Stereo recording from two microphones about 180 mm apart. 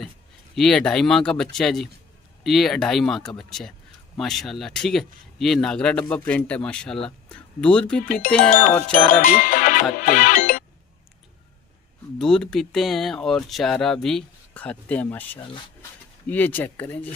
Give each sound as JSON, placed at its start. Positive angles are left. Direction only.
{"t": 0.6, "sound": "speech", "side_deg": 5}
{"t": 9.1, "sound": "music", "side_deg": 50}
{"t": 12.2, "sound": "speech", "side_deg": 5}